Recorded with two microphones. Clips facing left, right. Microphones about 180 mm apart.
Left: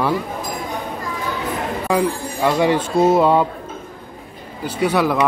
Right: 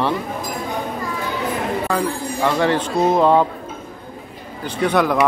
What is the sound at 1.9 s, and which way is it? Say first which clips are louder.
Speech: left 2 dB; 10° left (ahead or behind).